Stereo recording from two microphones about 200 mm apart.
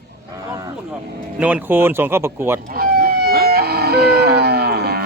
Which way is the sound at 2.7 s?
50° right (ahead or behind).